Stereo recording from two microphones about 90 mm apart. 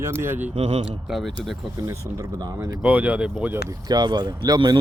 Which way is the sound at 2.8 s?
15° right (ahead or behind).